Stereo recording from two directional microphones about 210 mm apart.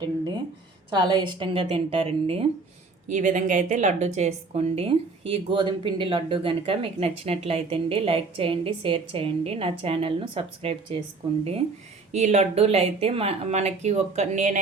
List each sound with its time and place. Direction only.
0.9 s a woman's voice: 20° right (ahead or behind)
12.1 s speech: 35° right (ahead or behind)